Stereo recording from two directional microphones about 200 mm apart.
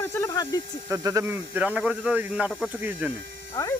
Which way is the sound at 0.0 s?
15° left (ahead or behind).